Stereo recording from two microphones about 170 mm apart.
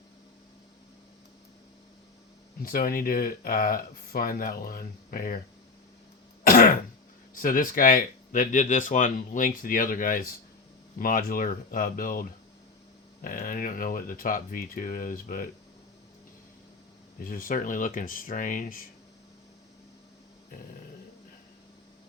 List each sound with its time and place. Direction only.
2.6 s speech: 60° left (ahead or behind)
6.4 s throat clearing: 55° left (ahead or behind)
7.4 s speech: 55° left (ahead or behind)
13.2 s speech: 55° left (ahead or behind)
17.2 s speech: 55° left (ahead or behind)